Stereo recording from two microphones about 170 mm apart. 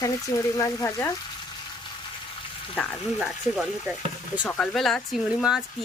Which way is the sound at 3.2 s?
5° right (ahead or behind).